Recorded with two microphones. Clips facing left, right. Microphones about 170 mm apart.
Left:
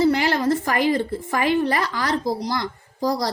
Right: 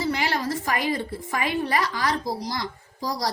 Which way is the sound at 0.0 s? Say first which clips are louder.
Left 7 dB; 50° left (ahead or behind).